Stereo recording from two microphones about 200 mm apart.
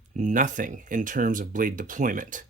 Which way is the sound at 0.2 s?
40° right (ahead or behind).